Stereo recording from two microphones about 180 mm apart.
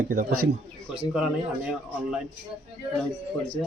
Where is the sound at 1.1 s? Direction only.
5° right (ahead or behind).